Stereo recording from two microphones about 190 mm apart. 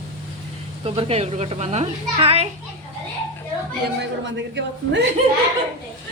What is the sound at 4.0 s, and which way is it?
A man's voice, 70° right (ahead or behind).